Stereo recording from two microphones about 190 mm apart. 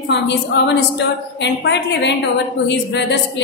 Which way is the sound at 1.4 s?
65° left (ahead or behind).